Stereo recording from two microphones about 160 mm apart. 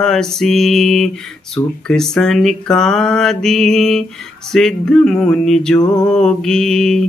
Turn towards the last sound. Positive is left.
turn(degrees=5)  # may be behind; listen again after turning